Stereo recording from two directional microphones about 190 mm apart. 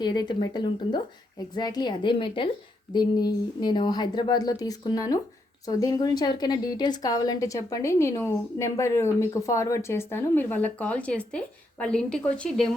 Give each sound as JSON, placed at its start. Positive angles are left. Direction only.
{"t": 0.0, "sound": "a woman's voice", "side_deg": 20}